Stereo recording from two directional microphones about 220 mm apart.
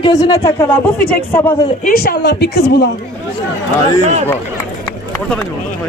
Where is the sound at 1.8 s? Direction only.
40° left (ahead or behind).